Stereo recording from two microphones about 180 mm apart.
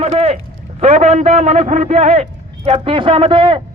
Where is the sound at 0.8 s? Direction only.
35° right (ahead or behind).